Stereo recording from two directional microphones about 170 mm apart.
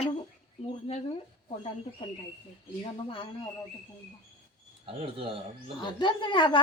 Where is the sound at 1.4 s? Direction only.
35° left (ahead or behind).